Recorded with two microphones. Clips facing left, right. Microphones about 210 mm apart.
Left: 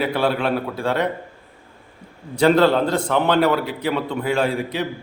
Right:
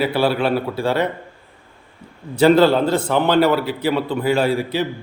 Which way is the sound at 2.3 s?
5° right (ahead or behind).